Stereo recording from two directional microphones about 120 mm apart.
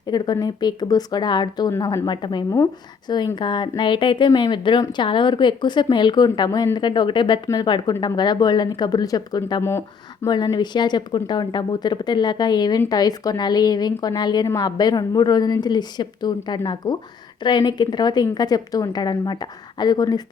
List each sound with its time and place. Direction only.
0.0 s speech: 35° left (ahead or behind)